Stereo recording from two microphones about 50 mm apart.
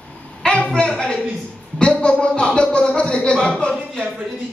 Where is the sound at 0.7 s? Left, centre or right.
Centre.